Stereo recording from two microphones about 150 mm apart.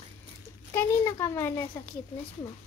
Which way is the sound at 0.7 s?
15° left (ahead or behind).